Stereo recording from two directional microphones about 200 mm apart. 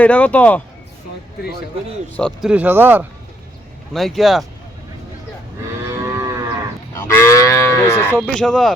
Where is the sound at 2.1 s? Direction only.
Centre (ahead or behind).